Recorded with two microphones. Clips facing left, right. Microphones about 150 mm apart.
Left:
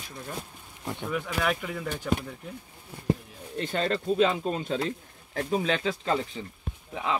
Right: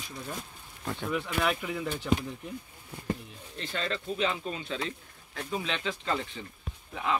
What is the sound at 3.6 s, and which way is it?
Speech, 50° left (ahead or behind).